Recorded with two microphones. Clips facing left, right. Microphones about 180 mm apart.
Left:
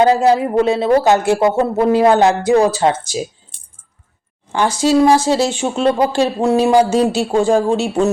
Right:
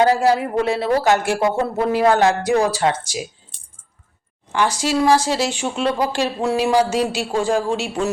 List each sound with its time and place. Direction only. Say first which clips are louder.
0.0 s speech: left 4 dB; 20° left (ahead or behind)
4.5 s speech: left 6 dB; 25° left (ahead or behind)
7.5 s speech: left 6 dB; 40° left (ahead or behind)